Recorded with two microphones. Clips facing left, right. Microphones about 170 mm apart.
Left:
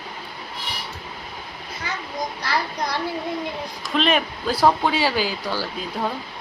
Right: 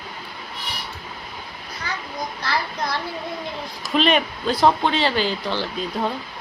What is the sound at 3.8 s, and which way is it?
Speech, centre (ahead or behind).